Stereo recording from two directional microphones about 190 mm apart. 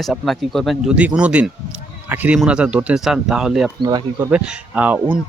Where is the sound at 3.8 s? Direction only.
20° right (ahead or behind).